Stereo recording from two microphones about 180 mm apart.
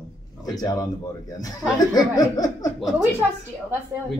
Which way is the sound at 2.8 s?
Centre (ahead or behind).